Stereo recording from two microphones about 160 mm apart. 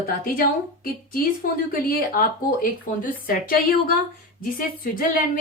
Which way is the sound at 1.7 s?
65° left (ahead or behind).